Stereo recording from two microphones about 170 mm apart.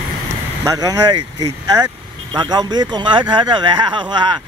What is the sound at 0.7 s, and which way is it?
Speech, 20° right (ahead or behind).